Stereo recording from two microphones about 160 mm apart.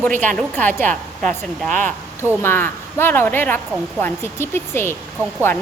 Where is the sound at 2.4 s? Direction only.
15° left (ahead or behind).